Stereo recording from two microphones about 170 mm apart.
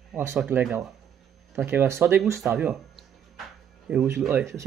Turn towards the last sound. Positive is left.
turn(degrees=-15)  # may be behind; listen again after turning